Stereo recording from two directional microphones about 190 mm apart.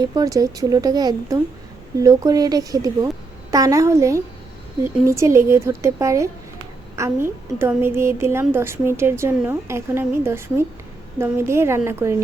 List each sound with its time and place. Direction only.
0.0 s a woman's voice: 20° right (ahead or behind)